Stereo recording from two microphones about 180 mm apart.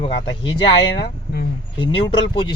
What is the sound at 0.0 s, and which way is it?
Speech, 25° left (ahead or behind).